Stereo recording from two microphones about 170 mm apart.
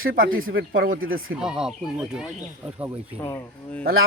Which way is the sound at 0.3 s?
55° right (ahead or behind).